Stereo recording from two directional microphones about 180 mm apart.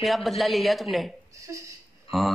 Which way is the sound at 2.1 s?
Centre (ahead or behind).